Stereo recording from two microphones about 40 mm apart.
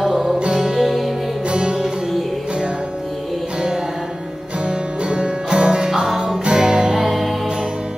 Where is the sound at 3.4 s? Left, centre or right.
Right.